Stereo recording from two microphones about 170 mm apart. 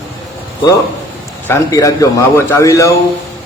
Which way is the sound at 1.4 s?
15° left (ahead or behind).